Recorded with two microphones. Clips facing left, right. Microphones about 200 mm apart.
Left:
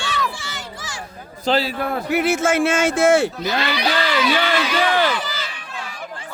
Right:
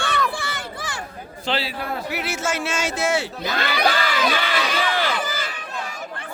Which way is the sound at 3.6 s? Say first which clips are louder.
Right 2 dB; 50° right (ahead or behind).